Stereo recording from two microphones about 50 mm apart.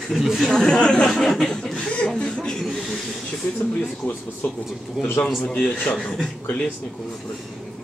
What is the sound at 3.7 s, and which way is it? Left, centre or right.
Speech, left.